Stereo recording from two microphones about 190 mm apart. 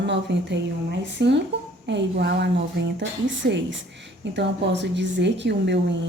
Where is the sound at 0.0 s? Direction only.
65° right (ahead or behind).